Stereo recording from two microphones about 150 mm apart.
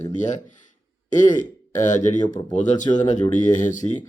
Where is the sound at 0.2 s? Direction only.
55° left (ahead or behind).